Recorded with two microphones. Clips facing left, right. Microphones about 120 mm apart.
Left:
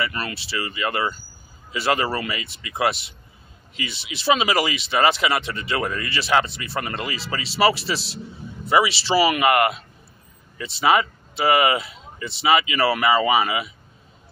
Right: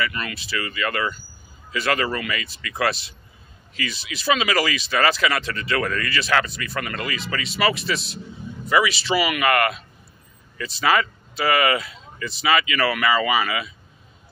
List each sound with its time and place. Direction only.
0.0 s speech: 30° left (ahead or behind)